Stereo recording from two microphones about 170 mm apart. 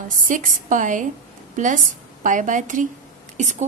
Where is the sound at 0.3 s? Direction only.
50° right (ahead or behind).